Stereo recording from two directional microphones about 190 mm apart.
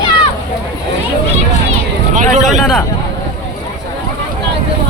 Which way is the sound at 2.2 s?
40° right (ahead or behind).